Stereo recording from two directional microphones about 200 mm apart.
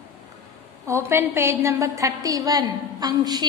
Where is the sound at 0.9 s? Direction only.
10° right (ahead or behind).